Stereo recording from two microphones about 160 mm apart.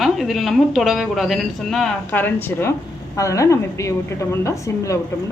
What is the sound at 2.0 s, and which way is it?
A woman's voice, 10° left (ahead or behind).